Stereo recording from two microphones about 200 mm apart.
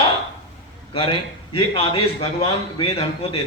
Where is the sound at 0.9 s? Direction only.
25° left (ahead or behind).